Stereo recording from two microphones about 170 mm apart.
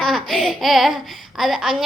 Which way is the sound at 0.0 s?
Centre (ahead or behind).